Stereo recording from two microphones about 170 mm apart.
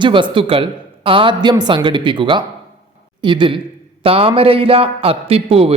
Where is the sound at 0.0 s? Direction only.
30° right (ahead or behind).